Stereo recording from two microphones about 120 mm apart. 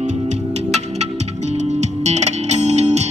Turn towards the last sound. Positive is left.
turn(degrees=-70)  # may be behind; listen again after turning